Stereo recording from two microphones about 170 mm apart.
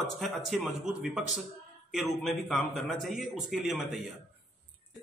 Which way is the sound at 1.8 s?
Centre (ahead or behind).